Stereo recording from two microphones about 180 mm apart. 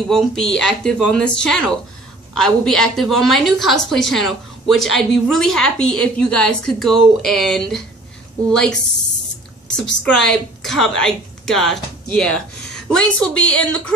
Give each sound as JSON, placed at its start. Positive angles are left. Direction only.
{"t": 0.1, "sound": "a woman's voice", "side_deg": 5}
{"t": 10.0, "sound": "a woman's voice", "side_deg": 5}